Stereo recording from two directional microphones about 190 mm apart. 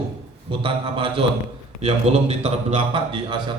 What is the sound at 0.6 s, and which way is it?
A man's voice, 25° right (ahead or behind).